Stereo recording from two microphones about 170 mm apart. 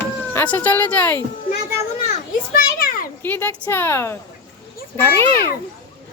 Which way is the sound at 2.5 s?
60° left (ahead or behind).